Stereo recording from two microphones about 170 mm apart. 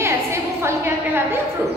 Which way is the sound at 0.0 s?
15° right (ahead or behind).